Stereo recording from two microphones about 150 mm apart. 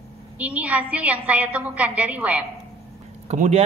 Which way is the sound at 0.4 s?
10° right (ahead or behind).